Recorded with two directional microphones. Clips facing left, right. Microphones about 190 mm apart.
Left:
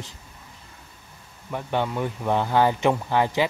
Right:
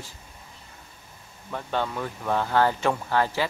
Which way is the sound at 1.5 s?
15° left (ahead or behind).